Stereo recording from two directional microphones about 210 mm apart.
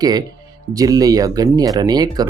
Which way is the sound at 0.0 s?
20° right (ahead or behind).